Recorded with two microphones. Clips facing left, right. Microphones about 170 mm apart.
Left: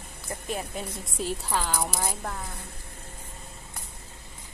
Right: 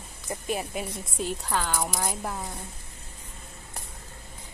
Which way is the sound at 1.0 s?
Centre (ahead or behind).